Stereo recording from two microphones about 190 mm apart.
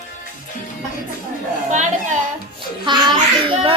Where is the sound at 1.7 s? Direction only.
40° right (ahead or behind).